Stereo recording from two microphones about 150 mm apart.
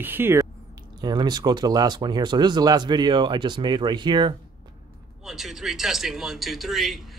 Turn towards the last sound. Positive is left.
turn(degrees=0)  # may be behind; listen again after turning